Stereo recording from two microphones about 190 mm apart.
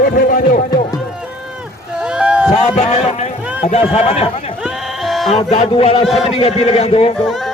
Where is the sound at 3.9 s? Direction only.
30° left (ahead or behind).